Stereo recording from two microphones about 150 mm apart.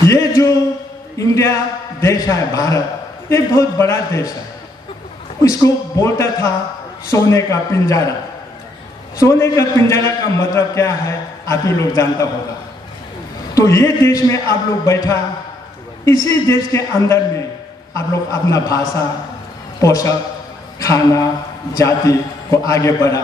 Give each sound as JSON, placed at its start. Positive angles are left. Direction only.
{"t": 0.0, "sound": "a sound", "side_deg": 20}
{"t": 1.1, "sound": "a man's voice", "side_deg": 20}
{"t": 5.4, "sound": "a man's voice", "side_deg": 25}
{"t": 9.2, "sound": "a man's voice", "side_deg": 20}
{"t": 13.6, "sound": "a man's voice", "side_deg": 20}